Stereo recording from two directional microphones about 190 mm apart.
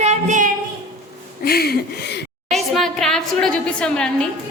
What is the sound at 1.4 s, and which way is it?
Speech, 55° left (ahead or behind).